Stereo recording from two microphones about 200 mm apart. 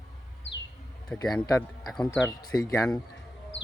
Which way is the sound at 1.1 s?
5° left (ahead or behind).